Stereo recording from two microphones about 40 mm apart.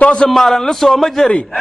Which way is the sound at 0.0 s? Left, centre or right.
Left.